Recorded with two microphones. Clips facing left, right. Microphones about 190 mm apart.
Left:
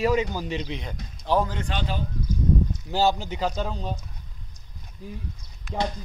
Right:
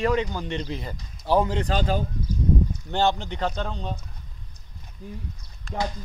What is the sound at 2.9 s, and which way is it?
A man's voice, 5° left (ahead or behind).